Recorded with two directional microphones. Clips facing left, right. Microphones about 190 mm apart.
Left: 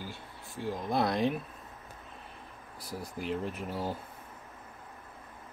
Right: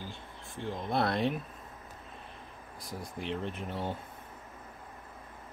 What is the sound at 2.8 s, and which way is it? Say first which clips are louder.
Speech: left 2 dB; 5° left (ahead or behind).